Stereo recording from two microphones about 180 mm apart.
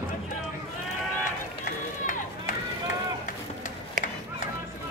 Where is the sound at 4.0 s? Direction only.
45° right (ahead or behind).